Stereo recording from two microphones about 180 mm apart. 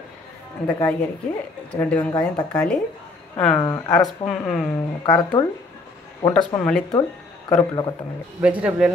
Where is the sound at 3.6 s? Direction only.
20° left (ahead or behind).